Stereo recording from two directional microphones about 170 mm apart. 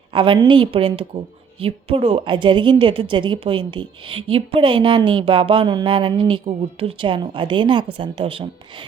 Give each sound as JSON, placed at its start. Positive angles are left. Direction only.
{"t": 0.1, "sound": "a woman's voice", "side_deg": -30}